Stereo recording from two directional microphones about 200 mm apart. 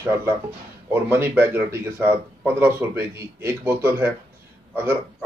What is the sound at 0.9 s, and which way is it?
Speech, 10° right (ahead or behind).